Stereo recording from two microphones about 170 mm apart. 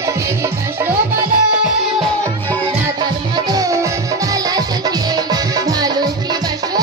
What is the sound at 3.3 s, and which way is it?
Music, 20° right (ahead or behind).